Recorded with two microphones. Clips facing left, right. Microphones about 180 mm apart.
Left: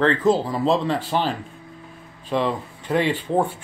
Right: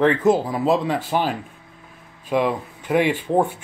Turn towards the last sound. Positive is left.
turn(degrees=-15)  # may be behind; listen again after turning